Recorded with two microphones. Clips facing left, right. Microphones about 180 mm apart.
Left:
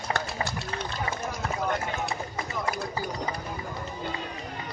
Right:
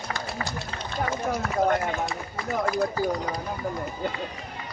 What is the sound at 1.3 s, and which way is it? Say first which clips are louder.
Run: right 8 dB; 50° right (ahead or behind).